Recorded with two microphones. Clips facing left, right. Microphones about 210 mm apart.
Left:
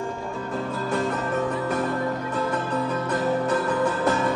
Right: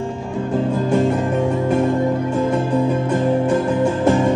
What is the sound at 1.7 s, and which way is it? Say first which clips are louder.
Music: right 8 dB; 25° right (ahead or behind).